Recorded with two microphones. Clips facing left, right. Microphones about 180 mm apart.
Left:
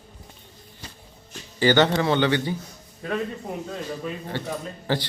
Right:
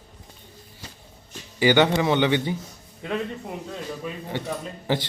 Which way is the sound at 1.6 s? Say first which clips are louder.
Even; 15° right (ahead or behind).